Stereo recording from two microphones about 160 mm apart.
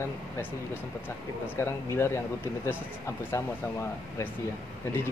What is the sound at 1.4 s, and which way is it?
Speech, 15° left (ahead or behind).